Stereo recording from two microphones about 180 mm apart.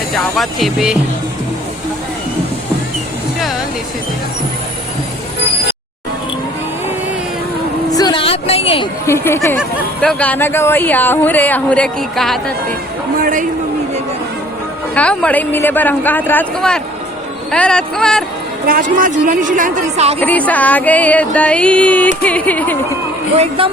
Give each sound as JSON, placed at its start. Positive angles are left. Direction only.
{"t": 0.3, "sound": "speech", "side_deg": 0}
{"t": 7.9, "sound": "a sound", "side_deg": 20}
{"t": 9.0, "sound": "music", "side_deg": 15}
{"t": 13.2, "sound": "a woman's voice", "side_deg": -50}
{"t": 14.9, "sound": "music", "side_deg": 5}
{"t": 17.5, "sound": "speech", "side_deg": 5}
{"t": 18.7, "sound": "a woman's voice", "side_deg": -50}
{"t": 20.1, "sound": "music", "side_deg": 10}